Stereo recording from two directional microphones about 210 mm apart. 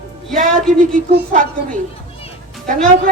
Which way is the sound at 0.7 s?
40° right (ahead or behind).